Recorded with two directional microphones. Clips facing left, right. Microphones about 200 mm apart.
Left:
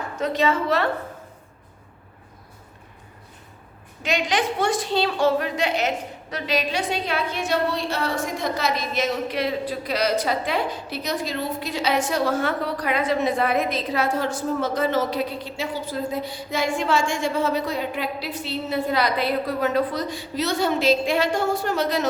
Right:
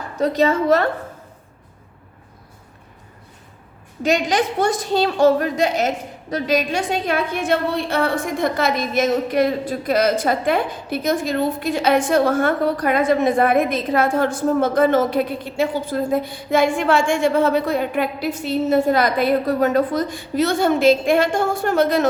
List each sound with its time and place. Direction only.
0.2 s a woman's voice: 40° right (ahead or behind)
4.0 s a woman's voice: 40° right (ahead or behind)